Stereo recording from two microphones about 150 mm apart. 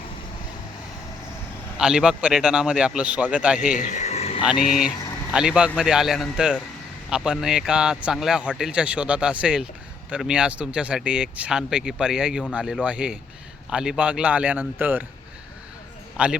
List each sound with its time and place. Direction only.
1.8 s a man's voice: 5° right (ahead or behind)
3.7 s a sound: 55° left (ahead or behind)
4.4 s a man's voice: 5° right (ahead or behind)
16.1 s a man's voice: 5° right (ahead or behind)